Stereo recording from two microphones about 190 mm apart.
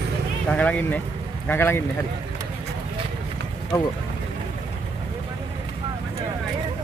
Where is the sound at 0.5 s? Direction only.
5° left (ahead or behind).